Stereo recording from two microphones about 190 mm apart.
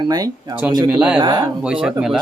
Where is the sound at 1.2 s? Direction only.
25° right (ahead or behind).